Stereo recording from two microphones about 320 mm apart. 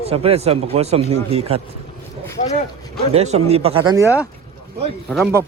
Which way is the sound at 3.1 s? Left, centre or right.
Centre.